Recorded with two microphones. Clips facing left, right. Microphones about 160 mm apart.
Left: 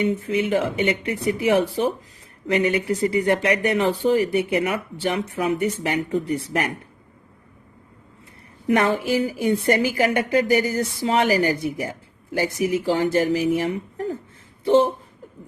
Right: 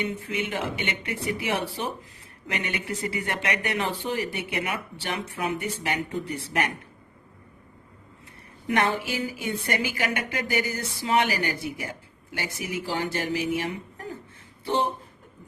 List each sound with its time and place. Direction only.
0.0 s a woman's voice: 35° left (ahead or behind)
8.6 s a woman's voice: 35° left (ahead or behind)